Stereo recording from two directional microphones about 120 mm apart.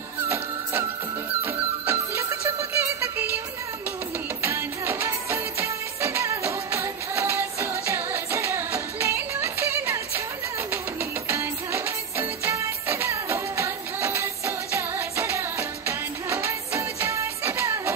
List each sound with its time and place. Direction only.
1.4 s music: 20° right (ahead or behind)
4.4 s music of bollywood: 20° right (ahead or behind)
10.7 s music: 20° right (ahead or behind)